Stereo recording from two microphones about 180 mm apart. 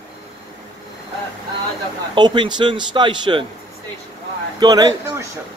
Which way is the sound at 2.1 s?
25° right (ahead or behind).